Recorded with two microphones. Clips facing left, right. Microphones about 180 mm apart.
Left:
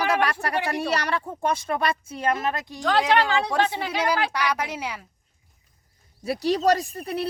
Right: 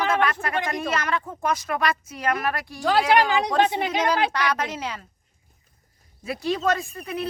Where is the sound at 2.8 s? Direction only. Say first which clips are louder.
Right 2 dB; 10° right (ahead or behind).